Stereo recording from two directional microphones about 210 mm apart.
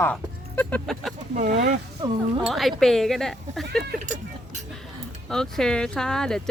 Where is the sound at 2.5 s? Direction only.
Centre (ahead or behind).